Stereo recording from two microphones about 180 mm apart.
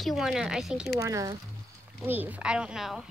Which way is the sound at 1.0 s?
20° right (ahead or behind).